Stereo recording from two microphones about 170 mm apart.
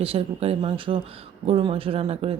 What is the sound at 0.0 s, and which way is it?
Speech, 35° right (ahead or behind).